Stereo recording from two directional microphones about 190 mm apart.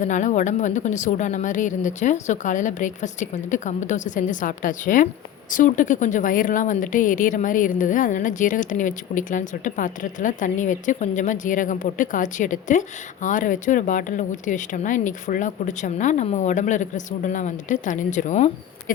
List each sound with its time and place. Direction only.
0.0 s a woman's voice: 40° left (ahead or behind)